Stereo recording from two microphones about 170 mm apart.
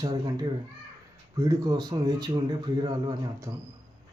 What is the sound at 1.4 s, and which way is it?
Speech, 25° right (ahead or behind).